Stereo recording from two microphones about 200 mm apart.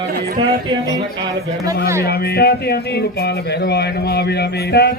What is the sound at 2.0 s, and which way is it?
A man's voice, 50° left (ahead or behind).